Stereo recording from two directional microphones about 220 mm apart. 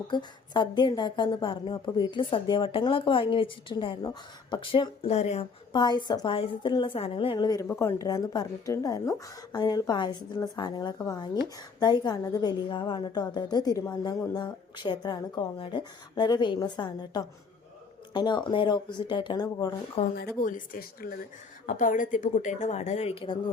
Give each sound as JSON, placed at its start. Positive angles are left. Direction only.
{"t": 0.1, "sound": "a woman's voice", "side_deg": 20}
{"t": 20.1, "sound": "speech", "side_deg": 40}